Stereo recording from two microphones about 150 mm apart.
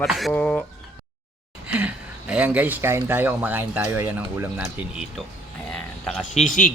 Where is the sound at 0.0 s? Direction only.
Centre (ahead or behind).